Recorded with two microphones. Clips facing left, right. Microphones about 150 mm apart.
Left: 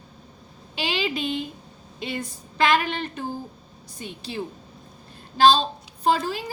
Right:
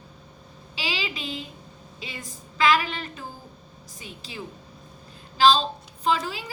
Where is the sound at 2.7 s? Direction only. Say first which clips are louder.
Left 3 dB; 55° left (ahead or behind).